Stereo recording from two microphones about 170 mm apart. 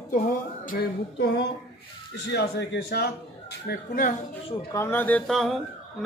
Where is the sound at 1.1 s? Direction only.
90° left.